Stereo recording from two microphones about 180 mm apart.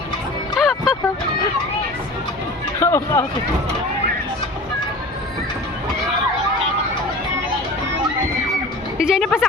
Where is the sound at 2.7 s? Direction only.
15° left (ahead or behind).